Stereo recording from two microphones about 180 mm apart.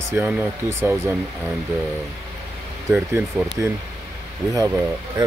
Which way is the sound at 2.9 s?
10° right (ahead or behind).